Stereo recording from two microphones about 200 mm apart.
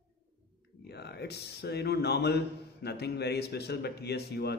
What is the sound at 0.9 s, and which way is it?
A man's voice, 55° left (ahead or behind).